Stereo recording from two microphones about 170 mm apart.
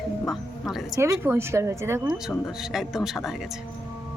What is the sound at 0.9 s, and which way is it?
Speech, 15° right (ahead or behind).